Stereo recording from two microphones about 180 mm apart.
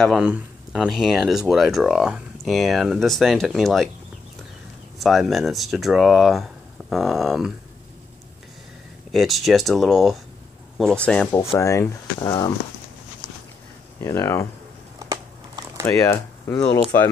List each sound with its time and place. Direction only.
0.0 s speech: 5° right (ahead or behind)
4.9 s speech: centre (ahead or behind)
9.1 s speech: centre (ahead or behind)
11.3 s speech: 15° left (ahead or behind)
14.0 s speech: 15° left (ahead or behind)
15.0 s a sound: 20° right (ahead or behind)
15.8 s speech: 15° left (ahead or behind)